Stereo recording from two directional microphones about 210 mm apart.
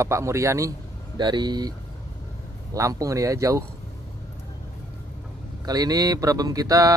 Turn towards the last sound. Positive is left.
turn(degrees=-15)  # may be behind; listen again after turning